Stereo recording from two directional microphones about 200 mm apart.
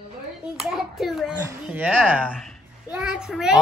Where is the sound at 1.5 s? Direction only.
5° right (ahead or behind).